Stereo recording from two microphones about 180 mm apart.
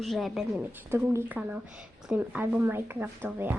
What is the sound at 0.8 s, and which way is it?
Speech, 15° right (ahead or behind).